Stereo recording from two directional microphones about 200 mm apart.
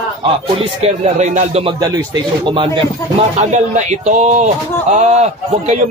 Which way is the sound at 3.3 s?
35° right (ahead or behind).